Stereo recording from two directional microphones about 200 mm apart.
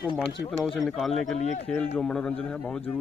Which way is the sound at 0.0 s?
25° left (ahead or behind).